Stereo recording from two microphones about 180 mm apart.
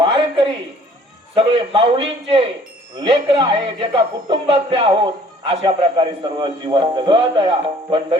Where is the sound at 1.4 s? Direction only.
30° right (ahead or behind).